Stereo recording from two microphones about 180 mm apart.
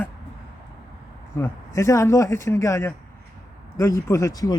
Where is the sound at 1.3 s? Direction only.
15° left (ahead or behind).